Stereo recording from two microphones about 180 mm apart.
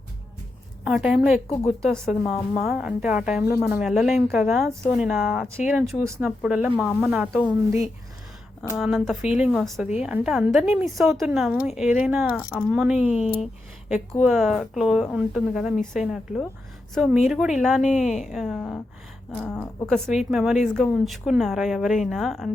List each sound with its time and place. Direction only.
0.9 s speech: 5° right (ahead or behind)
6.4 s speech: 5° right (ahead or behind)
8.8 s speech: centre (ahead or behind)
13.1 s speech: 35° left (ahead or behind)
13.8 s speech: 5° right (ahead or behind)
20.3 s speech: centre (ahead or behind)